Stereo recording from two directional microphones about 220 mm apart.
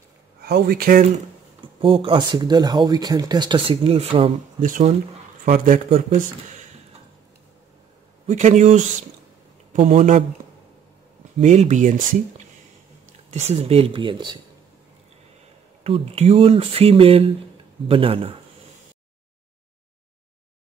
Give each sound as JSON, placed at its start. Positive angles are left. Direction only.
{"t": 0.4, "sound": "speech", "side_deg": -45}
{"t": 1.8, "sound": "speech", "side_deg": -25}
{"t": 4.6, "sound": "speech", "side_deg": -35}
{"t": 8.3, "sound": "speech", "side_deg": -35}
{"t": 11.3, "sound": "speech", "side_deg": -35}
{"t": 13.3, "sound": "speech", "side_deg": -30}
{"t": 15.8, "sound": "speech", "side_deg": -25}